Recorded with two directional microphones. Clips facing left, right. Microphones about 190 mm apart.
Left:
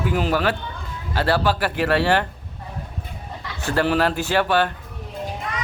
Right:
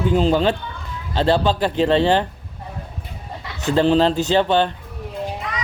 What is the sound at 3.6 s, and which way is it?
Speech, 20° right (ahead or behind).